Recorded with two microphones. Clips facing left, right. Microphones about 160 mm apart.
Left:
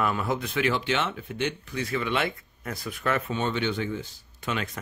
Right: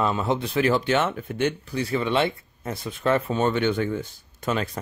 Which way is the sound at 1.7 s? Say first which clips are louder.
Right 4 dB; 30° right (ahead or behind).